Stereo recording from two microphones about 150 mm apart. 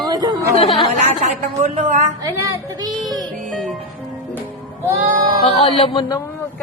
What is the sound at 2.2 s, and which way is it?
Speech, 25° right (ahead or behind).